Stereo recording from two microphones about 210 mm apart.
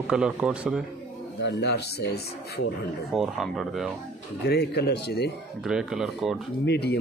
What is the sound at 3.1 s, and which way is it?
Speech, centre (ahead or behind).